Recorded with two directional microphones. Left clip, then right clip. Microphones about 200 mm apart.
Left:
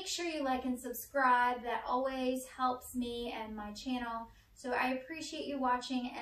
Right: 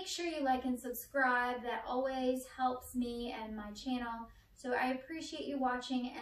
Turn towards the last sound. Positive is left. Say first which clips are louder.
# left 3 dB
turn(degrees=5)  # may be behind; listen again after turning